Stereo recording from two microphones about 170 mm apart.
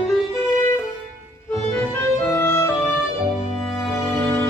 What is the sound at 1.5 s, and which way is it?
Music, 15° left (ahead or behind).